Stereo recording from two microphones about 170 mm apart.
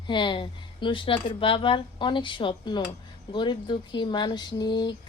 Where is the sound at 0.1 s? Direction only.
30° left (ahead or behind).